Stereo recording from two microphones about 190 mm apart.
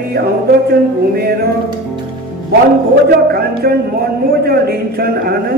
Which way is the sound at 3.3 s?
55° right (ahead or behind).